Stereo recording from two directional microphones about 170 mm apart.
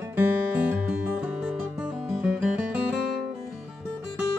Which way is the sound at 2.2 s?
5° right (ahead or behind).